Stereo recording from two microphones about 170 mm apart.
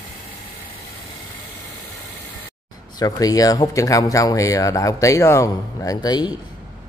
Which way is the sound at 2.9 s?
20° left (ahead or behind).